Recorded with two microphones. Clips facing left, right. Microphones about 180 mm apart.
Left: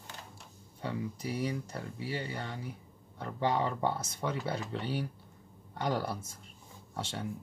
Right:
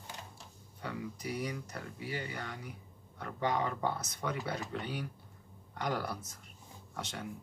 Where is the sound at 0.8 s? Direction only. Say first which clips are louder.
Left 3 dB; 30° left (ahead or behind).